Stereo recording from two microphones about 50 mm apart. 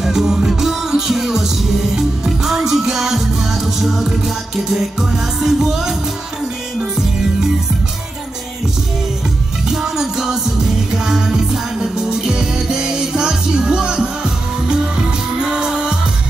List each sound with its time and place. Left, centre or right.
0.0 s music: centre
4.7 s music: centre
9.7 s music: centre
15.3 s music: centre